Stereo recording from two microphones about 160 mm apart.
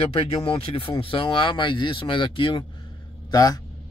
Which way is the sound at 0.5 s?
35° left (ahead or behind).